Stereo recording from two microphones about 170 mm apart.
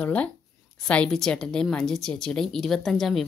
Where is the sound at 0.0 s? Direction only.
10° left (ahead or behind).